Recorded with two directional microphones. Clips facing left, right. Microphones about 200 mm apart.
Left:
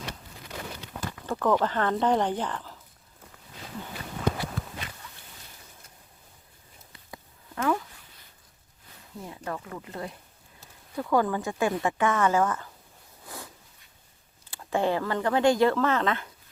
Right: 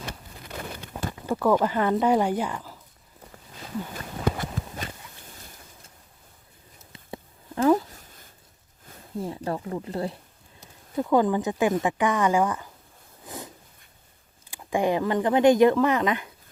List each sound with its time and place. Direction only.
1.3 s speech: 10° right (ahead or behind)
3.9 s walk: 45° right (ahead or behind)
6.9 s a sound: 30° right (ahead or behind); by 8.3 s 45° right (ahead or behind)
9.1 s speech: 30° right (ahead or behind)
10.6 s speech: 20° right (ahead or behind)
13.2 s a sound: 20° right (ahead or behind)
14.5 s speech: 15° right (ahead or behind)